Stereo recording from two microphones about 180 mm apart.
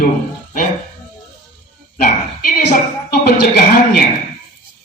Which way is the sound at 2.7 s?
60° left (ahead or behind).